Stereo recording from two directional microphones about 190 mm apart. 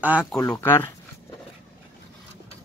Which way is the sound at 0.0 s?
5° right (ahead or behind).